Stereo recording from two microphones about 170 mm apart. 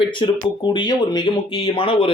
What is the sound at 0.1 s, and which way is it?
Speech, 30° left (ahead or behind).